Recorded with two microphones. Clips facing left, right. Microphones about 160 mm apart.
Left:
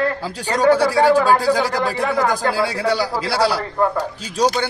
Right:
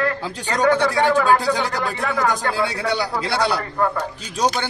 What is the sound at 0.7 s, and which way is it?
Speech, 35° left (ahead or behind).